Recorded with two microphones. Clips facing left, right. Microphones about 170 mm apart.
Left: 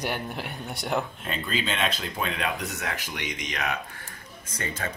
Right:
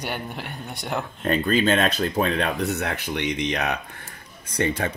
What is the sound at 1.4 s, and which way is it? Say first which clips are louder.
Speech: right 7 dB; 55° right (ahead or behind).